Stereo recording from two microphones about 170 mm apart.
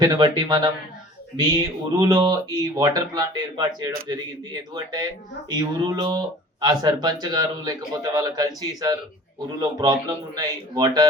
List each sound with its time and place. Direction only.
0.0 s speech: 25° right (ahead or behind)